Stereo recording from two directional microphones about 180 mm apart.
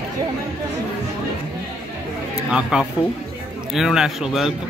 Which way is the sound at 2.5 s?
5° right (ahead or behind).